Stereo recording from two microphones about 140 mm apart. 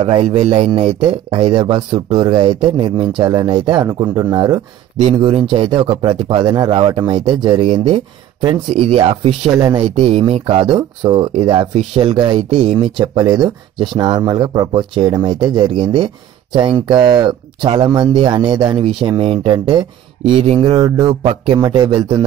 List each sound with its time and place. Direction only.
0.0 s speech: 40° right (ahead or behind)
5.0 s speech: 40° right (ahead or behind)
21.6 s speech: 30° right (ahead or behind)